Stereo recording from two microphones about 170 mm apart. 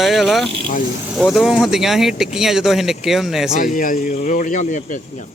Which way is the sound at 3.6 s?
50° left (ahead or behind).